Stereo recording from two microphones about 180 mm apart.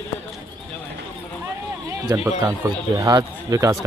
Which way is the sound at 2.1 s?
20° right (ahead or behind).